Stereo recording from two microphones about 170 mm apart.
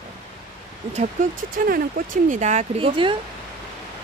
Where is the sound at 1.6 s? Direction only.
55° right (ahead or behind); by 3.1 s 30° right (ahead or behind).